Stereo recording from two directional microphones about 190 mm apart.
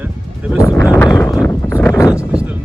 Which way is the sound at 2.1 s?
5° right (ahead or behind).